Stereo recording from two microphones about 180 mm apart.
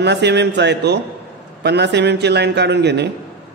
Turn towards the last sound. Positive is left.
turn(degrees=-70)  # may be behind; listen again after turning